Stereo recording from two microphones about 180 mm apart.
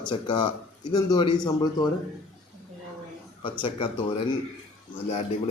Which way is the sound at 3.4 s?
30° left (ahead or behind).